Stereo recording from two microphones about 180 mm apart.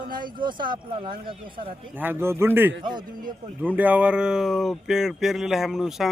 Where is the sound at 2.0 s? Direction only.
10° right (ahead or behind).